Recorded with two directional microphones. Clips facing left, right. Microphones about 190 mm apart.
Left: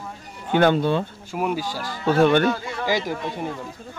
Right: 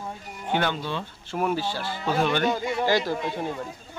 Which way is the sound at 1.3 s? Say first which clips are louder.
Left 1 dB; 10° left (ahead or behind).